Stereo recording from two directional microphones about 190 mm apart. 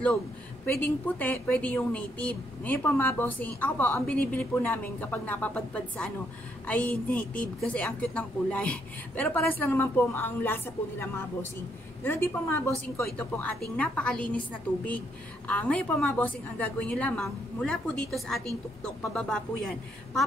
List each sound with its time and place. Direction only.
0.7 s a woman's voice: 10° left (ahead or behind)